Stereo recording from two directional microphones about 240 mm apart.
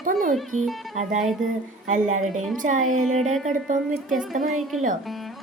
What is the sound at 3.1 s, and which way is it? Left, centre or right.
Speech, centre.